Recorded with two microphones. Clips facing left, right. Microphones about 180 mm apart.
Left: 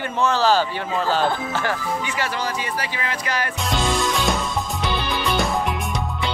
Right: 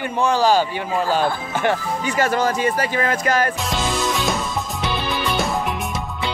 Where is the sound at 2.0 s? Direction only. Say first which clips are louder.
Right 6 dB; 45° right (ahead or behind).